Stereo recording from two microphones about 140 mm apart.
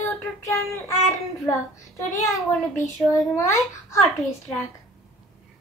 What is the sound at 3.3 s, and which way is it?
Speech, 20° left (ahead or behind).